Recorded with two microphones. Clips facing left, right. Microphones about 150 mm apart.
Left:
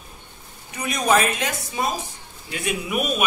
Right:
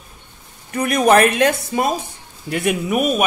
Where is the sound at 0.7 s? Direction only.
60° right (ahead or behind).